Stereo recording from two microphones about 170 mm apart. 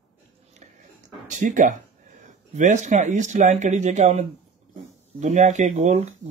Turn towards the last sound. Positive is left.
turn(degrees=-45)  # may be behind; listen again after turning